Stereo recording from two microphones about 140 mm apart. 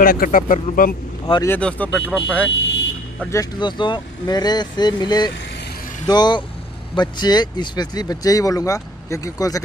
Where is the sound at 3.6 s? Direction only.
35° left (ahead or behind).